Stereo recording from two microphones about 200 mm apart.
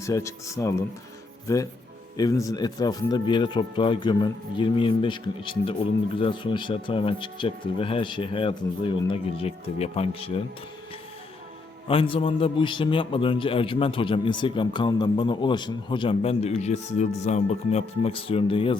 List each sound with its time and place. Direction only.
0.0 s a man's voice: 15° left (ahead or behind)
11.9 s a man's voice: 25° left (ahead or behind)